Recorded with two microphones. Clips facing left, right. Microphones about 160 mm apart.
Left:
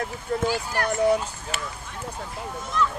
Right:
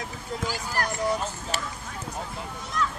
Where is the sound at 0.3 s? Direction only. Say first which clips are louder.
Left 5 dB; 60° left (ahead or behind).